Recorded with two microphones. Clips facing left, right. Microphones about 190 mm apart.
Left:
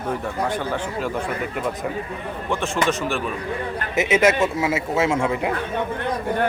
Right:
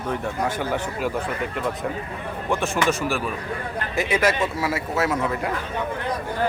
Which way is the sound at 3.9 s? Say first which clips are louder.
Left 4 dB; 20° left (ahead or behind).